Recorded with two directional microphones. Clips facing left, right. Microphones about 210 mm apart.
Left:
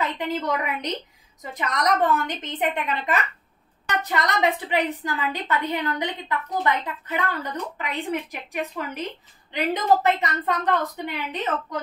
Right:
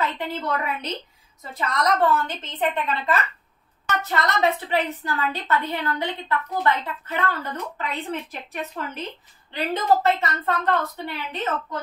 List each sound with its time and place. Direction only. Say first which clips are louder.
0.0 s a woman's voice: left 1 dB; 15° left (ahead or behind)
10.0 s a woman's voice: even; 15° left (ahead or behind)